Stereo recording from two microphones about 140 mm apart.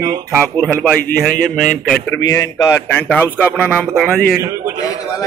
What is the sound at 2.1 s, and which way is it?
Speech, 25° left (ahead or behind).